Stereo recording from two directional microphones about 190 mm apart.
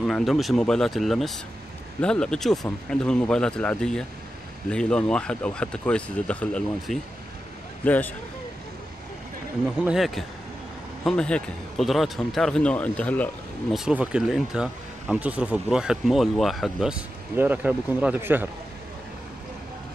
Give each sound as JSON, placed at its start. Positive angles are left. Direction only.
{"t": 0.0, "sound": "speech", "side_deg": 0}
{"t": 9.8, "sound": "speech", "side_deg": 0}